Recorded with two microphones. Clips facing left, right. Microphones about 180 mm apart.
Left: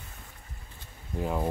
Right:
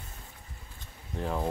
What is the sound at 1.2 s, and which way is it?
Speech, 5° left (ahead or behind).